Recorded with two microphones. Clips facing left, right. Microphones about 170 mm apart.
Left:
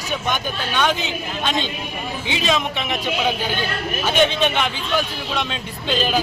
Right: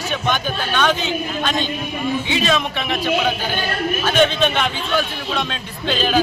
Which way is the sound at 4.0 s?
15° left (ahead or behind).